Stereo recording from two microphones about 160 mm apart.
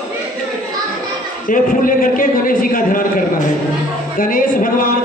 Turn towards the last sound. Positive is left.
turn(degrees=60)  # may be behind; listen again after turning